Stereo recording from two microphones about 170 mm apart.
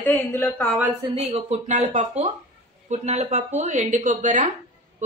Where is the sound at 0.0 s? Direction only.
10° left (ahead or behind).